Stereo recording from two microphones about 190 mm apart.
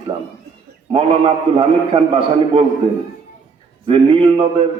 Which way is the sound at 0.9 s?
30° right (ahead or behind).